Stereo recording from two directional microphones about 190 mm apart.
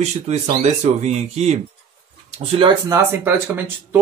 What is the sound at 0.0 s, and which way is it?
Speech, 35° right (ahead or behind).